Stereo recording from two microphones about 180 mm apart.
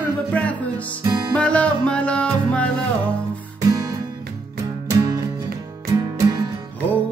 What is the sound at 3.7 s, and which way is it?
Music, 20° right (ahead or behind).